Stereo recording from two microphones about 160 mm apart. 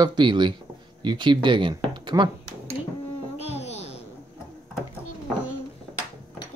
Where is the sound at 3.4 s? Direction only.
40° left (ahead or behind).